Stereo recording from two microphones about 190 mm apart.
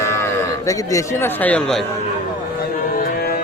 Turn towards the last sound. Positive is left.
turn(degrees=50)  # may be behind; listen again after turning